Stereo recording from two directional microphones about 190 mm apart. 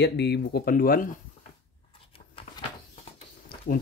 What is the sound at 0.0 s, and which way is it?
Speech, 60° left (ahead or behind).